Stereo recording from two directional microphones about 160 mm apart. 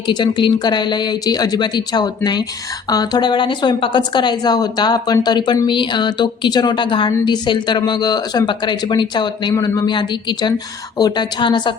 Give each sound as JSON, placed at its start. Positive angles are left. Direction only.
{"t": 0.1, "sound": "a woman's voice", "side_deg": 30}